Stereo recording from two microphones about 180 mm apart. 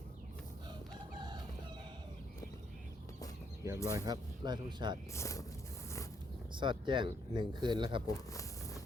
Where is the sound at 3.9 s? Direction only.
20° right (ahead or behind).